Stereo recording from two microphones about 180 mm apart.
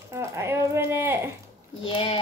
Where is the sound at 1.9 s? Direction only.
30° left (ahead or behind).